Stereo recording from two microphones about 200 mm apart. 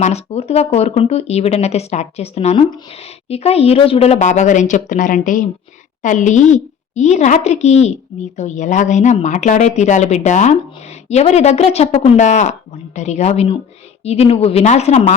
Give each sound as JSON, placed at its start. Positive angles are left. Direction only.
{"t": 0.0, "sound": "speech", "side_deg": 30}